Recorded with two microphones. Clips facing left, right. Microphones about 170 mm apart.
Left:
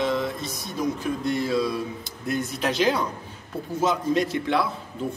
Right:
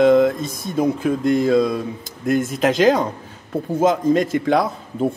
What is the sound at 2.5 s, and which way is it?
Speech, 90° right.